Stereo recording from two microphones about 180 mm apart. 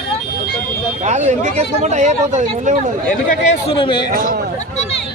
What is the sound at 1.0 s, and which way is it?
Speech, 40° right (ahead or behind).